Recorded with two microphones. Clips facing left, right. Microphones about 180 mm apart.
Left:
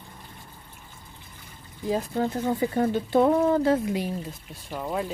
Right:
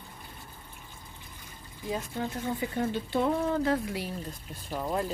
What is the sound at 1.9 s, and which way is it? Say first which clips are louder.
Speech: left 7 dB; 35° left (ahead or behind).